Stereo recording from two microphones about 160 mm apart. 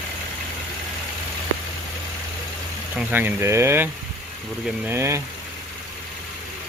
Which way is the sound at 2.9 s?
10° right (ahead or behind).